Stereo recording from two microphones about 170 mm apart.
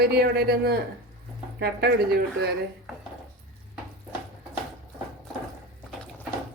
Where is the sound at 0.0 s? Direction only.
70° right (ahead or behind).